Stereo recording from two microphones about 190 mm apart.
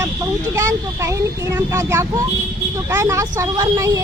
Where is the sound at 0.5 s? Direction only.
15° right (ahead or behind).